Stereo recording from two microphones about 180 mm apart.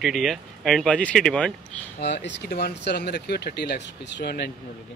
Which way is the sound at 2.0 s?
70° left (ahead or behind).